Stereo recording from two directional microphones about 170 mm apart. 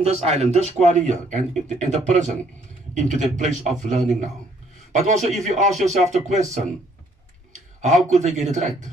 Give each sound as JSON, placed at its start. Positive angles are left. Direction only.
{"t": 0.0, "sound": "speech", "side_deg": -40}
{"t": 7.5, "sound": "a sound", "side_deg": -45}
{"t": 8.4, "sound": "speech", "side_deg": -45}